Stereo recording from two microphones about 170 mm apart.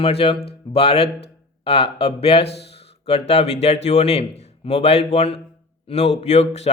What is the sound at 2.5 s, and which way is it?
Speech, 80° left.